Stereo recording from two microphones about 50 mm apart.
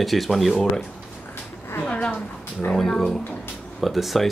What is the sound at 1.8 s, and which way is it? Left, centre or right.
Speech, left.